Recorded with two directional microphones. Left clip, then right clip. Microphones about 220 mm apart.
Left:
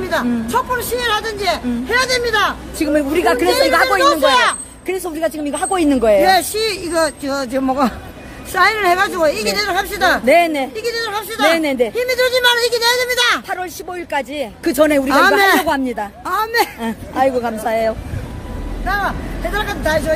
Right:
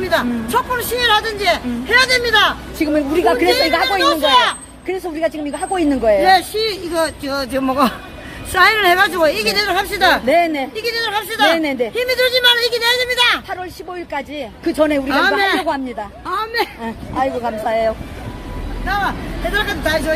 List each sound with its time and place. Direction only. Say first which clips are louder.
0.1 s a woman's voice: even; 10° left (ahead or behind)
3.4 s speech: left 1 dB; 25° left (ahead or behind)
4.0 s speech: left 1 dB; 35° left (ahead or behind)
5.5 s speech: left 2 dB; 20° left (ahead or behind)
6.2 s a woman's voice: right 1 dB; 45° left (ahead or behind)
7.0 s speech: left 2 dB; 25° left (ahead or behind)
7.6 s a man's voice: right 1 dB; 5° left (ahead or behind); by 15.1 s 25° left (ahead or behind)
15.1 s speech: left 4 dB; 40° left (ahead or behind)
16.3 s a sound: left 3 dB; 45° left (ahead or behind)
16.8 s a woman's voice: left 3 dB; 15° left (ahead or behind)
18.9 s speech: even; 30° left (ahead or behind)
19.5 s speech: even; 20° left (ahead or behind)